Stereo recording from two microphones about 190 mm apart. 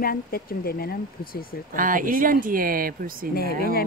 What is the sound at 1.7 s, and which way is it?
Speech, 45° right (ahead or behind).